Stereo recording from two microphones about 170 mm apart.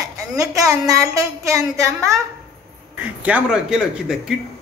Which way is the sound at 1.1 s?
20° right (ahead or behind).